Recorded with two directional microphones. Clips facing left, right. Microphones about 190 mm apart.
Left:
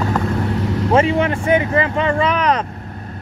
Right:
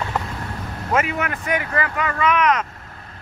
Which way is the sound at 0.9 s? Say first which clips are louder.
Left 6 dB; 30° left (ahead or behind).